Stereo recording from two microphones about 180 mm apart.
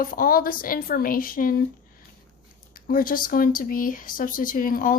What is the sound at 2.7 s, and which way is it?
Speech, 50° left (ahead or behind).